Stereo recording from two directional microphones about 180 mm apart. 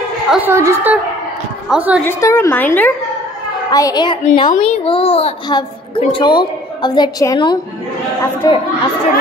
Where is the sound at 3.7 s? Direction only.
20° left (ahead or behind).